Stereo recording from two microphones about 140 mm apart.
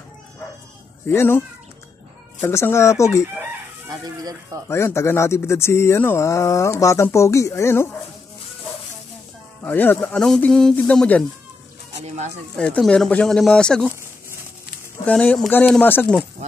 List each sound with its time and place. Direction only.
1.0 s speech: 15° left (ahead or behind)
2.4 s speech: 20° left (ahead or behind)
4.0 s speech: 25° right (ahead or behind)
4.6 s speech: 20° left (ahead or behind)
9.6 s speech: 15° left (ahead or behind)
12.5 s speech: 5° left (ahead or behind)
15.0 s speech: 10° left (ahead or behind)